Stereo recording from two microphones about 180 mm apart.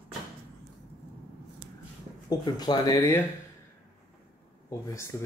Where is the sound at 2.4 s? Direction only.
25° left (ahead or behind).